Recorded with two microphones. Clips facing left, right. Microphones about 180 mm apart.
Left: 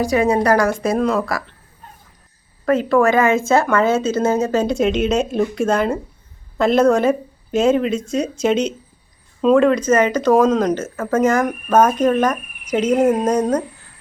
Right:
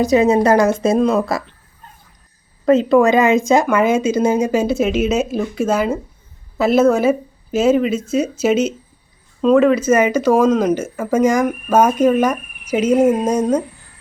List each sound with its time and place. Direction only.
0.0 s a woman's voice: 20° right (ahead or behind)
2.6 s speech: 20° right (ahead or behind)